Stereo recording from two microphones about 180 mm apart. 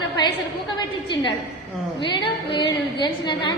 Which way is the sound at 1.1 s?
25° left (ahead or behind).